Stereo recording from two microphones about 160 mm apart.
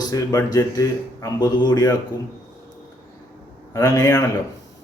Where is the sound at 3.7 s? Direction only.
20° left (ahead or behind).